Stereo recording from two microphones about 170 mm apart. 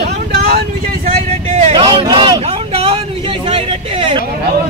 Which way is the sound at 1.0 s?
40° right (ahead or behind).